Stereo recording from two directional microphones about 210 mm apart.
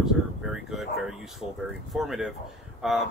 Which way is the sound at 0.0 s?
Centre (ahead or behind).